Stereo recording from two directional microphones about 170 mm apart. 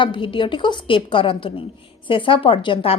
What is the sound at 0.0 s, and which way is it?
A woman's voice, 30° left (ahead or behind).